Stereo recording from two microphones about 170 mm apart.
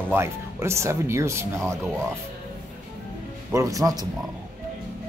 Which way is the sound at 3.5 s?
20° right (ahead or behind).